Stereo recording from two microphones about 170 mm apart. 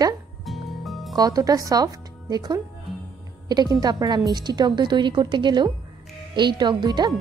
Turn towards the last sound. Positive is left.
turn(degrees=-25)  # may be behind; listen again after turning